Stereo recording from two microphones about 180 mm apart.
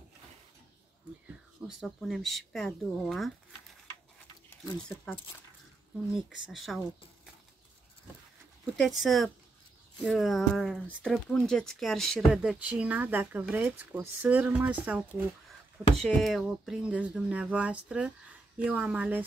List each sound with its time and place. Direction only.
1.2 s speech: centre (ahead or behind)
4.5 s speech: 5° left (ahead or behind)
6.1 s speech: centre (ahead or behind)
8.7 s speech: centre (ahead or behind)
16.0 s speech: 5° left (ahead or behind)